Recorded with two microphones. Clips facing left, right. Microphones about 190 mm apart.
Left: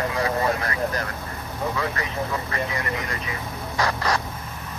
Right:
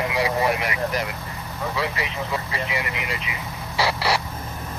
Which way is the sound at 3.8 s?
10° right (ahead or behind).